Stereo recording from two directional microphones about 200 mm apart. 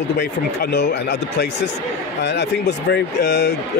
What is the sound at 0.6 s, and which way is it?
Speech, 55° left (ahead or behind).